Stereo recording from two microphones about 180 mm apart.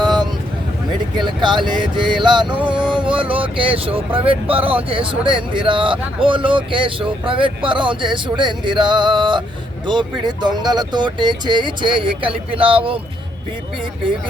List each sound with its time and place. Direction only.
0.0 s vehicle: 25° right (ahead or behind)
1.2 s speech: 25° right (ahead or behind)